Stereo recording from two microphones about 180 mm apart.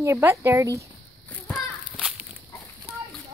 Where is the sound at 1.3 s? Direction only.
10° left (ahead or behind).